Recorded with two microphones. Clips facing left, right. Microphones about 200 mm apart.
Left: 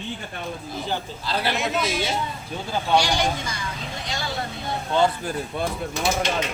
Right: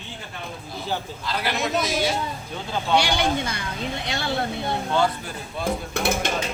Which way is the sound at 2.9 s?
60° right (ahead or behind).